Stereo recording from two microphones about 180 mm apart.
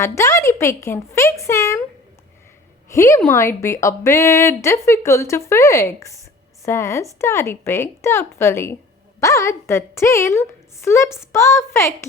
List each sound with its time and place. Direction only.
0.0 s speech: 15° left (ahead or behind)
2.9 s speech: 15° left (ahead or behind)